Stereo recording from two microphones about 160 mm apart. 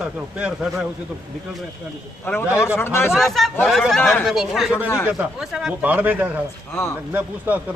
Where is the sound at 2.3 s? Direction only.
10° left (ahead or behind).